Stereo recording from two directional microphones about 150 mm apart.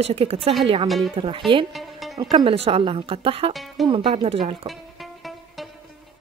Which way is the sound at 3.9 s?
40° right (ahead or behind).